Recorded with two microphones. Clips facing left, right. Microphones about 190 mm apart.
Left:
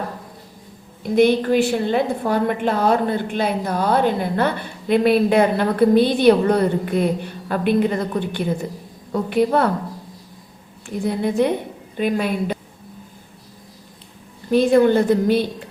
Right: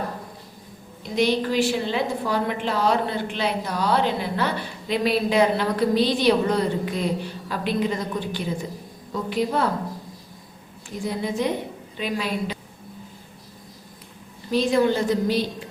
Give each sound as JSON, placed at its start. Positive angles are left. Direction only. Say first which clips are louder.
{"t": 1.0, "sound": "a woman's voice", "louder": "left 6 dB", "side_deg": 55}
{"t": 11.0, "sound": "a woman's voice", "louder": "left 6 dB", "side_deg": 60}
{"t": 14.5, "sound": "a woman's voice", "louder": "left 6 dB", "side_deg": 55}